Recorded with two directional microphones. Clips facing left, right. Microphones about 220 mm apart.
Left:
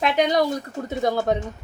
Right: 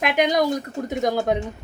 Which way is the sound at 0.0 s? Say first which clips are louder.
Even; 10° right (ahead or behind).